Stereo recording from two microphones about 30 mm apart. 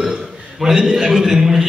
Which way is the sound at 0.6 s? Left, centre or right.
Centre.